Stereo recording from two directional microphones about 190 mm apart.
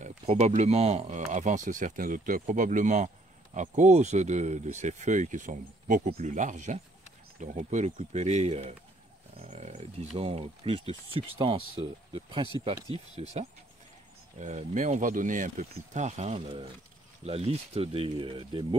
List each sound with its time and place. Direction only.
0.0 s speech: 35° right (ahead or behind)
14.4 s speech: 40° right (ahead or behind)